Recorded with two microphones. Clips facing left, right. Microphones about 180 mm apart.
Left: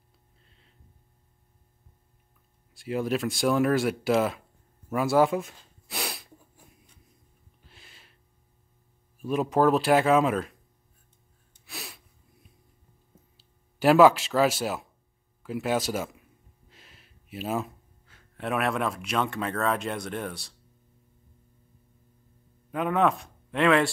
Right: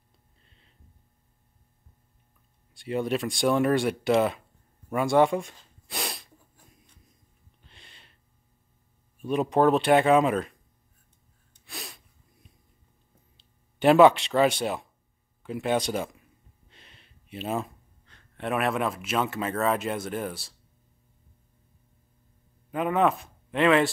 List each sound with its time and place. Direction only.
2.7 s speech: centre (ahead or behind)
4.8 s a sound: 5° left (ahead or behind)
7.6 s gasp: 5° left (ahead or behind)
9.2 s speech: centre (ahead or behind)
11.6 s sneeze: centre (ahead or behind)
13.4 s speech: centre (ahead or behind)
22.7 s speech: centre (ahead or behind)